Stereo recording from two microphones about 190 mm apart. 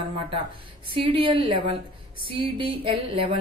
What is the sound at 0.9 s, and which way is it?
A woman's voice, 25° right (ahead or behind).